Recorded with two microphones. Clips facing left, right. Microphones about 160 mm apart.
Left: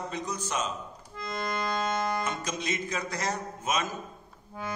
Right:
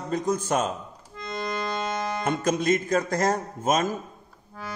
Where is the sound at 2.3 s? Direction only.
50° right (ahead or behind).